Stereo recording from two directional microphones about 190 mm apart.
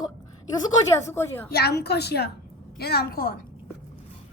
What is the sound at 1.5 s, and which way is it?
A woman's voice, 55° left (ahead or behind).